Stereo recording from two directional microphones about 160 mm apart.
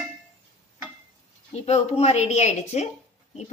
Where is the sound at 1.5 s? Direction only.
45° left (ahead or behind).